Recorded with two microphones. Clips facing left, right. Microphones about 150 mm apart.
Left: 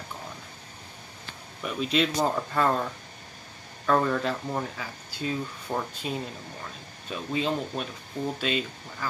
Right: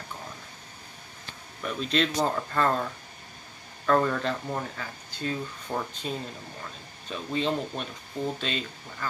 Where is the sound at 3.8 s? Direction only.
Centre (ahead or behind).